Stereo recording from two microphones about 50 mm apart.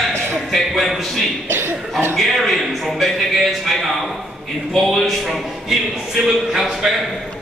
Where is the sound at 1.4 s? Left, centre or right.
Right.